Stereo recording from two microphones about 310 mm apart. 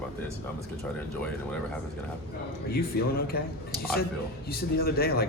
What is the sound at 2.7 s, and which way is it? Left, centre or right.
Speech, left.